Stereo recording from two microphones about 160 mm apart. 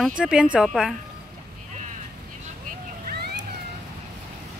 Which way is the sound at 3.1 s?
75° right (ahead or behind).